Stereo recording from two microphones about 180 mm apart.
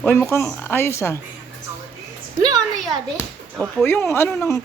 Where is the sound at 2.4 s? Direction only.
20° right (ahead or behind).